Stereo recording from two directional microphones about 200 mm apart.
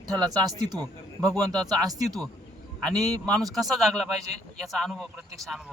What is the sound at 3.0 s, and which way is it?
Speech, 20° right (ahead or behind).